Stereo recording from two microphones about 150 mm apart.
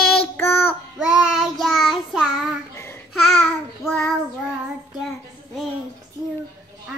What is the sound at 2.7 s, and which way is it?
Babbling, 15° left (ahead or behind).